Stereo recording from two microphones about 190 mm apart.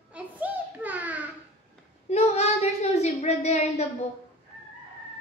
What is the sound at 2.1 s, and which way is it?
A woman's voice, 35° left (ahead or behind).